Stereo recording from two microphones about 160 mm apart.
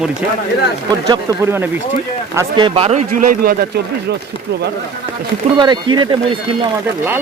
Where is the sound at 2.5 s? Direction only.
35° right (ahead or behind); by 3.8 s 70° right (ahead or behind).